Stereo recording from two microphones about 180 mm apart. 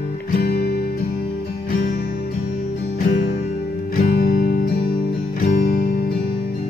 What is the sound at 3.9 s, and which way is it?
Music, 55° left (ahead or behind).